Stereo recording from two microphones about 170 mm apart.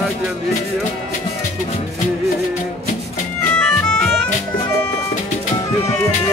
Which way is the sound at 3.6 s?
5° left (ahead or behind).